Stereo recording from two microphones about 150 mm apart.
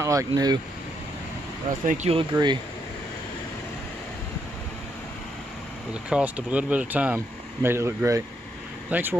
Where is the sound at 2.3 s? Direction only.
30° right (ahead or behind).